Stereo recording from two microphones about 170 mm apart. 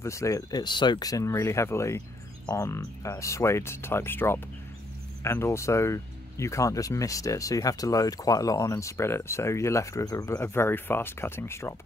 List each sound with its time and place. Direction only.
0.0 s speech: 15° left (ahead or behind)